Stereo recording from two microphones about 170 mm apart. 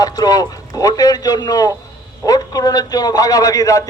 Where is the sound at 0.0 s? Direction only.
20° left (ahead or behind).